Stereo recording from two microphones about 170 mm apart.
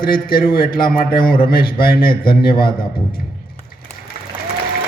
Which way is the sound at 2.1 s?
30° left (ahead or behind).